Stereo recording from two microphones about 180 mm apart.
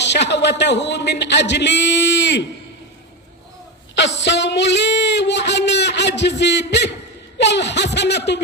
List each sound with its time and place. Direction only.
0.0 s a man's voice: 75° left (ahead or behind)
4.3 s a man's voice: 70° left (ahead or behind)